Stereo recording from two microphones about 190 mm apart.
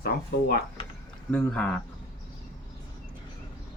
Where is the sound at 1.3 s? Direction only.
5° left (ahead or behind).